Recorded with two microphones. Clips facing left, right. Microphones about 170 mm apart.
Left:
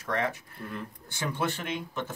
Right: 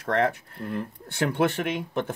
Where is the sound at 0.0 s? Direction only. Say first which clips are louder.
Right 6 dB; 55° right (ahead or behind).